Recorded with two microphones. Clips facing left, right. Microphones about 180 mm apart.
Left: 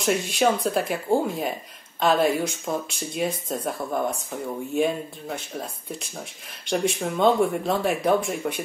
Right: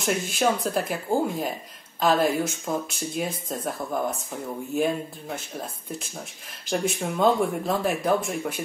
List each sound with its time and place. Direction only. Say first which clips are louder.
0.0 s speech: left 2 dB; centre (ahead or behind)